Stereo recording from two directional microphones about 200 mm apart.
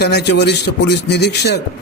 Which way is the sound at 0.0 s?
55° left (ahead or behind).